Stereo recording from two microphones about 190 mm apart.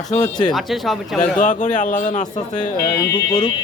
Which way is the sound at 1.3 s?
40° left (ahead or behind).